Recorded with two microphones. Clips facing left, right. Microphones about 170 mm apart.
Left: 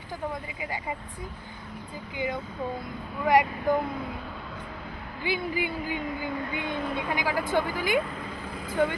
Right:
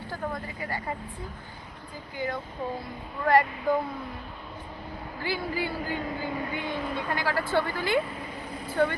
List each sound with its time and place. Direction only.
0.6 s speech: 10° left (ahead or behind)
2.1 s speech: 15° left (ahead or behind)
5.2 s speech: 20° left (ahead or behind)